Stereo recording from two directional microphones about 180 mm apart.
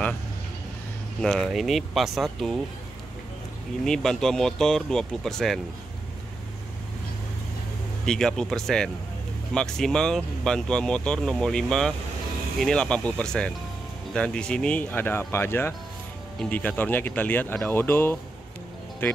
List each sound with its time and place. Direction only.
1.2 s speech: centre (ahead or behind)
3.8 s speech: 5° left (ahead or behind)
8.0 s speech: 5° left (ahead or behind)